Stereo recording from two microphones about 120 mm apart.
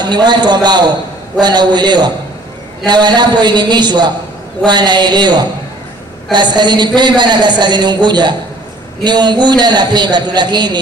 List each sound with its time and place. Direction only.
0.0 s a man's voice: 35° right (ahead or behind)